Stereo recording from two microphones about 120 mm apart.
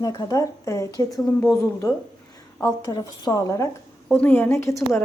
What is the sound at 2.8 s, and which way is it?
Speech, 35° left (ahead or behind).